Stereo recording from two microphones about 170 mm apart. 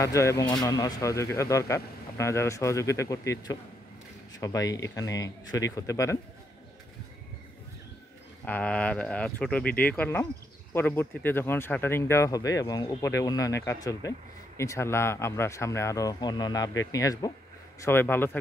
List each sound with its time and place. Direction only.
0.0 s speech: 20° left (ahead or behind)
8.5 s speech: 10° left (ahead or behind)